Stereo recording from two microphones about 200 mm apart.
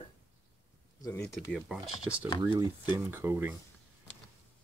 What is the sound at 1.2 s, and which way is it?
Speech, centre (ahead or behind).